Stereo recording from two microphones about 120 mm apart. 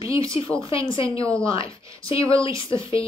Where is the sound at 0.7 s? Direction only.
50° left (ahead or behind).